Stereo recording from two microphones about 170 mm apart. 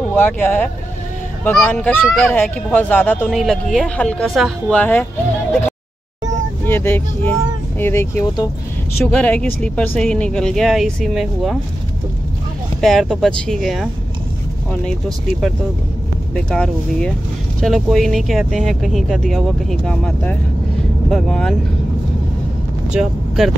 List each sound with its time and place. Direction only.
0.1 s speech: 10° left (ahead or behind)
6.6 s speech: 15° left (ahead or behind)
12.8 s speech: centre (ahead or behind)
22.8 s speech: centre (ahead or behind)